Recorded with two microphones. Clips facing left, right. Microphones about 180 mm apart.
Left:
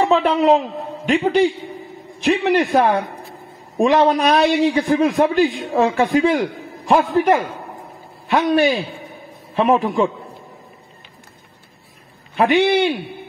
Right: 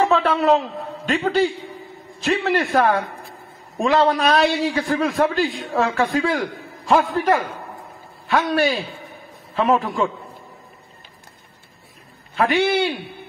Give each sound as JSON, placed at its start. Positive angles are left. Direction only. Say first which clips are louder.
{"t": 0.0, "sound": "a man's voice", "louder": "left 2 dB", "side_deg": 15}
{"t": 12.4, "sound": "a man's voice", "louder": "left 3 dB", "side_deg": 20}